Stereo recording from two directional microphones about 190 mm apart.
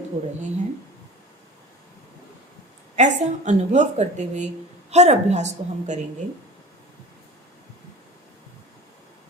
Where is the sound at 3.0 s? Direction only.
40° right (ahead or behind).